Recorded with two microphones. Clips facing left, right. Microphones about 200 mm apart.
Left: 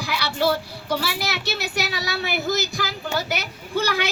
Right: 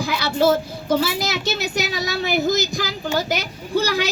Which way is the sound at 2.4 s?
15° right (ahead or behind).